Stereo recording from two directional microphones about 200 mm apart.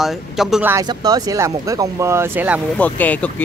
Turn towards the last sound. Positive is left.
turn(degrees=10)  # may be behind; listen again after turning